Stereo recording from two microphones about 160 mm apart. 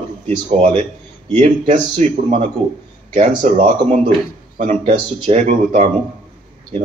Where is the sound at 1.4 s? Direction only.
45° right (ahead or behind).